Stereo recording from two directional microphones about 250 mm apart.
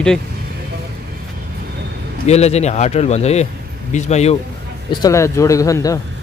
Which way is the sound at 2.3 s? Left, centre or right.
Left.